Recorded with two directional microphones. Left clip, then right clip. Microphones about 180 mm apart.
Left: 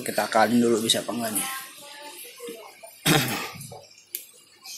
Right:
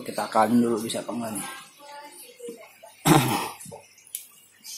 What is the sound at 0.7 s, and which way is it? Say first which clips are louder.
Speech: left 5 dB; 10° left (ahead or behind).